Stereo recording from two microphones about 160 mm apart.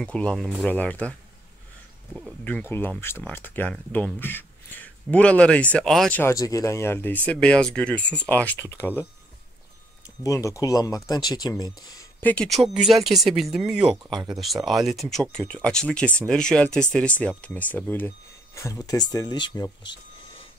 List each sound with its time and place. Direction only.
0.0 s speech: 5° left (ahead or behind)
2.1 s speech: 5° left (ahead or behind)
6.3 s speech: 20° left (ahead or behind)
10.0 s speech: 20° left (ahead or behind)
12.2 s speech: 10° left (ahead or behind)
14.1 s speech: 25° right (ahead or behind)
14.4 s speech: centre (ahead or behind); by 19.7 s 25° left (ahead or behind)